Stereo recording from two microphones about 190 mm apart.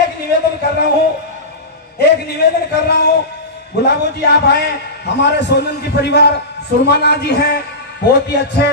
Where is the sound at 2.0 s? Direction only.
60° left (ahead or behind).